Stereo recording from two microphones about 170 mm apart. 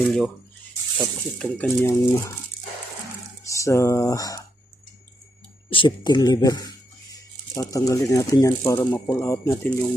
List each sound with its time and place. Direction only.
0.9 s speech: 10° left (ahead or behind)
3.4 s speech: 20° left (ahead or behind)
5.7 s speech: 30° left (ahead or behind)
7.1 s a sound: 20° left (ahead or behind)
8.1 s speech: 20° left (ahead or behind)